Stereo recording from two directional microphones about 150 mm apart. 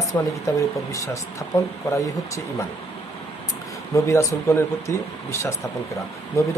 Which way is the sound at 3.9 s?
20° left (ahead or behind).